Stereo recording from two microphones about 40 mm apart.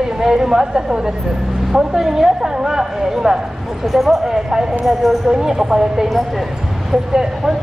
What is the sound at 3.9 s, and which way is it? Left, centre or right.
Speech, centre.